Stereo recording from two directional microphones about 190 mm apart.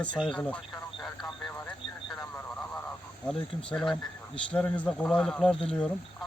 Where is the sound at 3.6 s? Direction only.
5° left (ahead or behind).